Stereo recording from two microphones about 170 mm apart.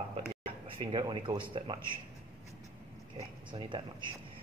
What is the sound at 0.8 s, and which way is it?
Speech, 25° right (ahead or behind).